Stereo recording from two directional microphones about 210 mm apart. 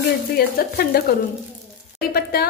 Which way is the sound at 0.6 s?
45° left (ahead or behind).